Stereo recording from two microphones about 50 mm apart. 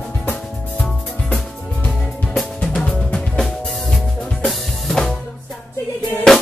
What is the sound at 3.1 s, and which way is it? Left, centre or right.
Music, centre.